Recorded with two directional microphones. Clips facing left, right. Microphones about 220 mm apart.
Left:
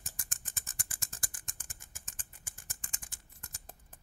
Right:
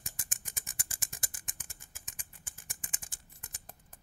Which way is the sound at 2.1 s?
15° right (ahead or behind).